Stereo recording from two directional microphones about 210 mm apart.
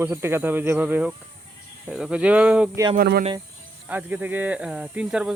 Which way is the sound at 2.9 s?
45° right (ahead or behind).